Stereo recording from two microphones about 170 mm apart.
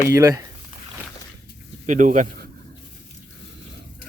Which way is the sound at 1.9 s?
50° right (ahead or behind).